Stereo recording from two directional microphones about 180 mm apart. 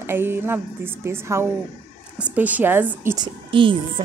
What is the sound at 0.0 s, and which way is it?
Speech, 10° right (ahead or behind).